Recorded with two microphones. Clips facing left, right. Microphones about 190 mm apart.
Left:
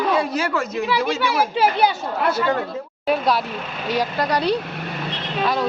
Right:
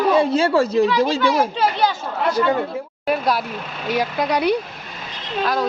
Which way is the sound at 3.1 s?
Centre (ahead or behind).